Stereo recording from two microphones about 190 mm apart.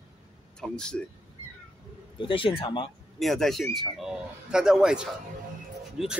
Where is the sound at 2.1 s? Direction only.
25° left (ahead or behind).